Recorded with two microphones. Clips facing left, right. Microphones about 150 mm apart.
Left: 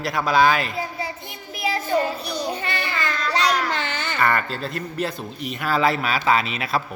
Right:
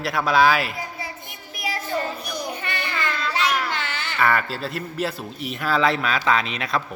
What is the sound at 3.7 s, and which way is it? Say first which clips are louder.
Baby cry: left 3 dB; 45° left (ahead or behind).